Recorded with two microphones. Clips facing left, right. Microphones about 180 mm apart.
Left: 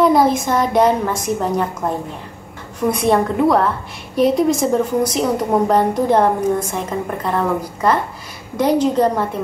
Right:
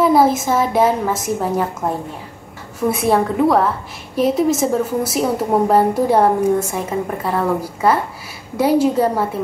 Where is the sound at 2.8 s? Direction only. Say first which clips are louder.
Even; 5° right (ahead or behind).